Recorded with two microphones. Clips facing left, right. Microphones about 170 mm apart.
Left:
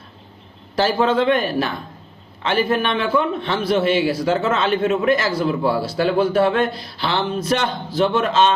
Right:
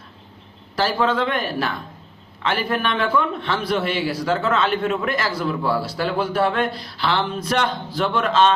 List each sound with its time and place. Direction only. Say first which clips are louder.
0.8 s speech: left 3 dB; 25° left (ahead or behind)